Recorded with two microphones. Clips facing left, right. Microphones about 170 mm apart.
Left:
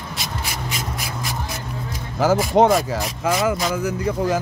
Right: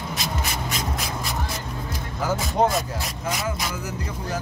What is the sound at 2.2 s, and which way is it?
Speech, 90° left.